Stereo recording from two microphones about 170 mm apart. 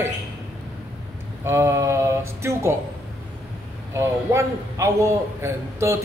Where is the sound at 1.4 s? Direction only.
15° right (ahead or behind).